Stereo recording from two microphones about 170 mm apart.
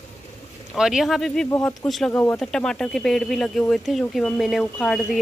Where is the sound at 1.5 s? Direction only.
15° left (ahead or behind).